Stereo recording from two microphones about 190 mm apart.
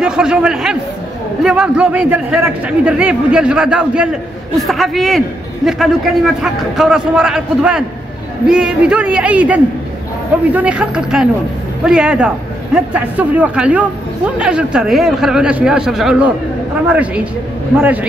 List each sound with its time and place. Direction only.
0.0 s a man's voice: 5° right (ahead or behind)